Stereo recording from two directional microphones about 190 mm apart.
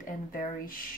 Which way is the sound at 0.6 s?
50° left (ahead or behind).